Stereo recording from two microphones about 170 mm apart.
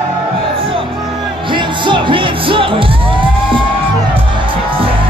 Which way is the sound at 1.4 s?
30° right (ahead or behind).